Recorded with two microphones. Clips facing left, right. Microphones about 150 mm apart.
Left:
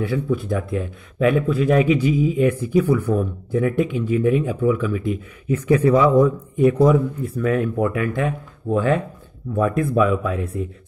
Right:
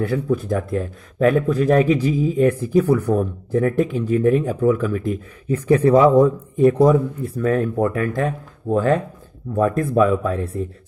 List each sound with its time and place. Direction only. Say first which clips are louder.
0.0 s speech: right 1 dB; 40° right (ahead or behind)
6.0 s speech: right 2 dB; 30° right (ahead or behind)